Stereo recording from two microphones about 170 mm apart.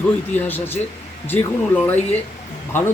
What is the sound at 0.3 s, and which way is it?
A man's voice, 10° left (ahead or behind).